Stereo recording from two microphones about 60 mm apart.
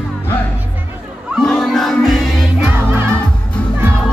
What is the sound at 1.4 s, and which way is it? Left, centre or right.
Crowd, centre.